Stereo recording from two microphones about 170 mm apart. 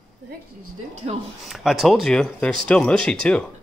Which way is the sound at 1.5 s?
Centre (ahead or behind).